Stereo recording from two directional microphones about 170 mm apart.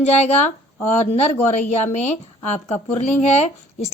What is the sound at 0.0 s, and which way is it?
Speech, 40° left (ahead or behind).